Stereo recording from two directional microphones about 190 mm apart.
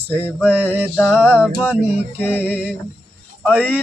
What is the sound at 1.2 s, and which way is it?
Speech, 10° left (ahead or behind).